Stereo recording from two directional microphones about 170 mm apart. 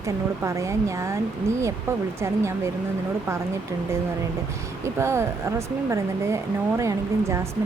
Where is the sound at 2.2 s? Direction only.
15° right (ahead or behind).